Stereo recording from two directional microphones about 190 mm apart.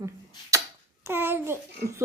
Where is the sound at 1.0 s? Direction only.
10° right (ahead or behind).